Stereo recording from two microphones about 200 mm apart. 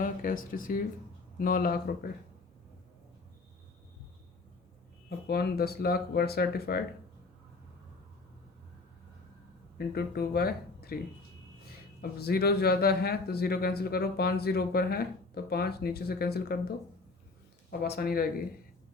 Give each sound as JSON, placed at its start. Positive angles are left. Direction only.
{"t": 0.0, "sound": "speech", "side_deg": 45}
{"t": 5.0, "sound": "speech", "side_deg": 50}
{"t": 9.7, "sound": "speech", "side_deg": 50}
{"t": 12.2, "sound": "speech", "side_deg": 50}